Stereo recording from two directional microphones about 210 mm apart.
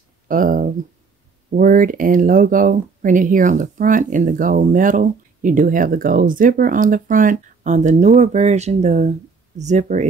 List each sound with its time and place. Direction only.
0.3 s speech: 40° right (ahead or behind)